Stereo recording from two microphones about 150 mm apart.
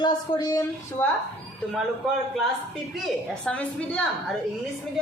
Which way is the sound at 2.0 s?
5° right (ahead or behind).